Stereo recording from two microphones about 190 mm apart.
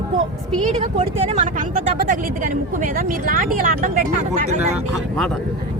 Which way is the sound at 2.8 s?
50° right (ahead or behind).